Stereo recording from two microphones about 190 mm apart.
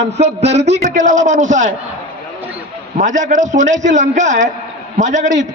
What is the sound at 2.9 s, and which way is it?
A man's voice, 40° right (ahead or behind).